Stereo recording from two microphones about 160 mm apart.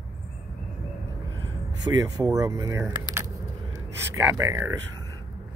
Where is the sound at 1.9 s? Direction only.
25° right (ahead or behind).